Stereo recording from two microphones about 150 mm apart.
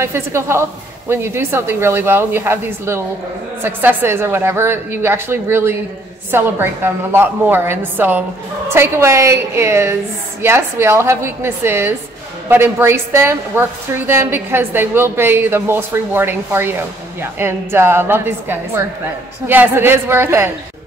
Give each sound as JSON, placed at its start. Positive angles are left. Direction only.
{"t": 0.0, "sound": "a woman's voice", "side_deg": -15}